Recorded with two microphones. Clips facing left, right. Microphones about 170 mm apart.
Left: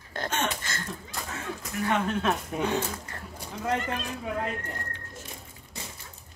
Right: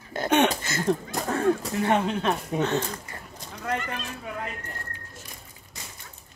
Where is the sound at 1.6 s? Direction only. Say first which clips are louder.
Right 4 dB; 30° right (ahead or behind).